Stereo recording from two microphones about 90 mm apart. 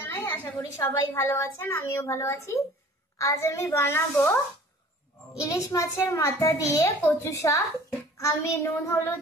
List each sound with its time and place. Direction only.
0.0 s a sound: 25° left (ahead or behind)
0.7 s a woman's voice: 30° left (ahead or behind)
5.4 s a woman's voice: 40° left (ahead or behind)